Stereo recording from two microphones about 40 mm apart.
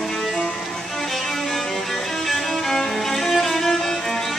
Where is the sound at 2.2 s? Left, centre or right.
Centre.